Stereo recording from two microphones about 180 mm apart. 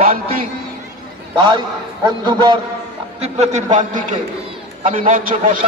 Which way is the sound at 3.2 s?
40° right (ahead or behind).